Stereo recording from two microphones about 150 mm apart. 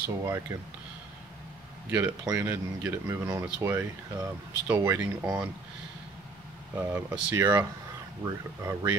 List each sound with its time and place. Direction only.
0.2 s speech: 20° right (ahead or behind)
1.9 s speech: 10° right (ahead or behind)
6.7 s speech: 10° right (ahead or behind)